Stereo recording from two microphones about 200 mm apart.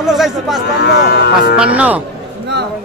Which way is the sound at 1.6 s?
5° right (ahead or behind).